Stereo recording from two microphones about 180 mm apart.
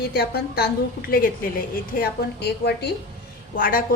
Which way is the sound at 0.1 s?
60° left (ahead or behind).